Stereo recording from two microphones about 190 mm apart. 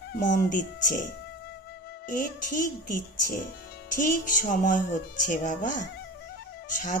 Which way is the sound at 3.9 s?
45° left (ahead or behind).